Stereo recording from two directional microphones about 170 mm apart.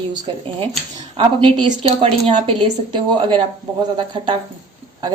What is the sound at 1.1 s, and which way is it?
A woman's voice, 30° right (ahead or behind).